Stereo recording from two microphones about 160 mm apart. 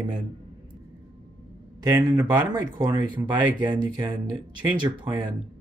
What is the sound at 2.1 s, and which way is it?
Speech, 25° right (ahead or behind).